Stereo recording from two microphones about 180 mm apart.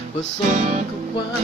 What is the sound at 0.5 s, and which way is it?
Music, 40° right (ahead or behind).